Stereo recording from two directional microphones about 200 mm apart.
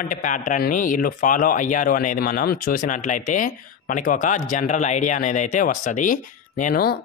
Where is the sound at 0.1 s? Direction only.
40° left (ahead or behind).